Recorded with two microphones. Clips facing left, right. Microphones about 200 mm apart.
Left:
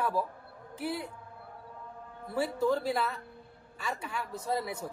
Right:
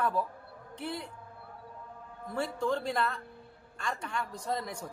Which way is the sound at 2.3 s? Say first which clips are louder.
Left 3 dB; 5° left (ahead or behind).